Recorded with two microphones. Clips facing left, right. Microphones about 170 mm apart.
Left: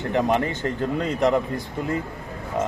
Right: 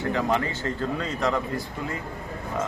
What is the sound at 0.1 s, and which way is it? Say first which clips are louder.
Speech: left 6 dB; 20° left (ahead or behind).